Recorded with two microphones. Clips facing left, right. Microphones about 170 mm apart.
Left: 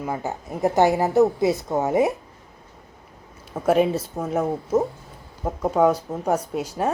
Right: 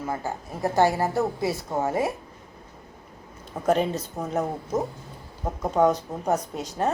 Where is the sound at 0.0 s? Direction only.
15° left (ahead or behind).